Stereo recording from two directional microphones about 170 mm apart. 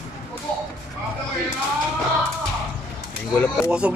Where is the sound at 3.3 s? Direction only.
10° left (ahead or behind).